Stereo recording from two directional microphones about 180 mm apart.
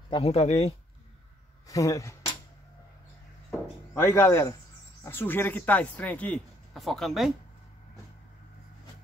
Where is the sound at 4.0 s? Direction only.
15° left (ahead or behind).